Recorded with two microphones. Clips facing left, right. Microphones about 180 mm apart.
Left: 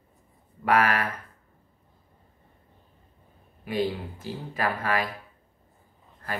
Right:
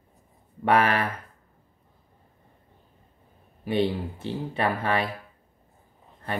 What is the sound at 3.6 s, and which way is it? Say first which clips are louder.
Speech: right 3 dB; 25° right (ahead or behind).